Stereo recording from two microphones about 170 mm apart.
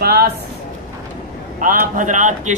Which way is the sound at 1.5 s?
50° right (ahead or behind).